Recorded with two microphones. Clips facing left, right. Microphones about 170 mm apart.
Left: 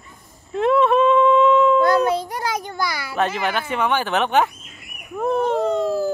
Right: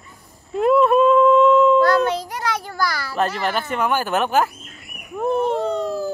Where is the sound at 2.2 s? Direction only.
20° left (ahead or behind).